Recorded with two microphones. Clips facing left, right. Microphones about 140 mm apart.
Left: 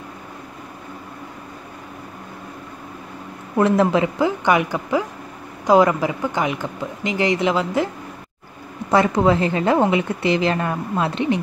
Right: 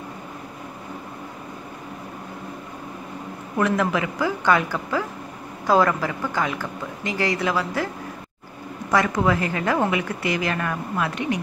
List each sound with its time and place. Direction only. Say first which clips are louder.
3.5 s a woman's voice: left 5 dB; 30° left (ahead or behind)
8.9 s a woman's voice: left 4 dB; 25° left (ahead or behind)